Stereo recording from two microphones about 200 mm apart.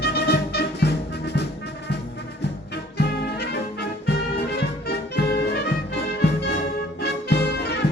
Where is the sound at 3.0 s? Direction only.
55° left (ahead or behind).